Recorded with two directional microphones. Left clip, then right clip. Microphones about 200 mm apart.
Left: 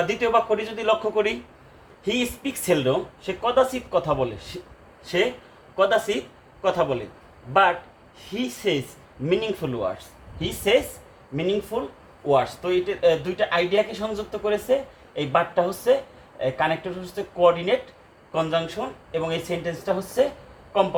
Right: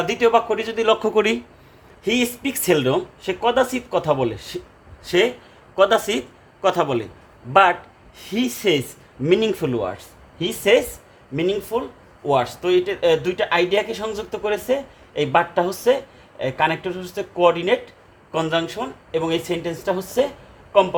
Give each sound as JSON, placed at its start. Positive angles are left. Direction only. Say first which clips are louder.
{"t": 0.0, "sound": "speech", "louder": "right 4 dB", "side_deg": -60}
{"t": 8.2, "sound": "speech", "louder": "right 5 dB", "side_deg": -55}
{"t": 11.3, "sound": "speech", "louder": "right 3 dB", "side_deg": -60}